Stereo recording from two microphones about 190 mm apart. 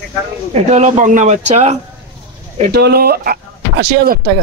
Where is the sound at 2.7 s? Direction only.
55° right (ahead or behind).